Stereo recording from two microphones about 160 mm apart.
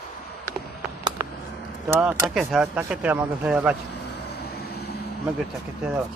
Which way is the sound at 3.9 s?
85° left.